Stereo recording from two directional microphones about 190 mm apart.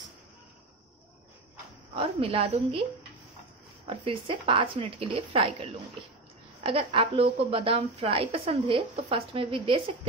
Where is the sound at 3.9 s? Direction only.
30° right (ahead or behind).